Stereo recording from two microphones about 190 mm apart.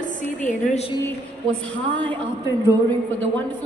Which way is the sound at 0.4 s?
40° left (ahead or behind).